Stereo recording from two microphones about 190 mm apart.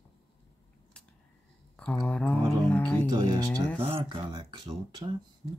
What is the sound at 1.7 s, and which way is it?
Speech, 5° left (ahead or behind).